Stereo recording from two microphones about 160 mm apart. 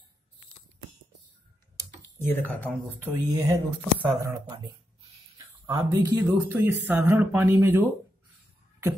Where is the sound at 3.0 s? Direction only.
15° right (ahead or behind).